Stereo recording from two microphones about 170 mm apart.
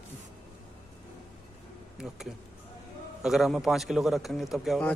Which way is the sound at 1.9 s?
5° right (ahead or behind).